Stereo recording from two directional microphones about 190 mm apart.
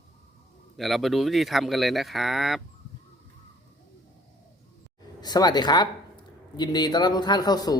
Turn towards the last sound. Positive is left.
turn(degrees=20)  # may be behind; listen again after turning